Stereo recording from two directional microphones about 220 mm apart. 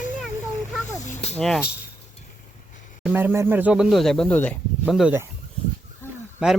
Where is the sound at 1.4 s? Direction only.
Centre (ahead or behind).